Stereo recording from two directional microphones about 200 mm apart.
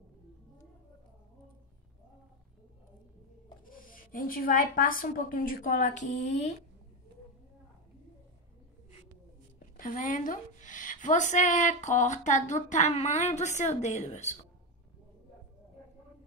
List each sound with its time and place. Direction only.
3.6 s a woman's voice: 45° left (ahead or behind)
9.8 s a woman's voice: 40° left (ahead or behind)